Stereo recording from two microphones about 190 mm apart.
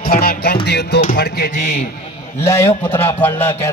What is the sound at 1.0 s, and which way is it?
Speech, 45° left (ahead or behind).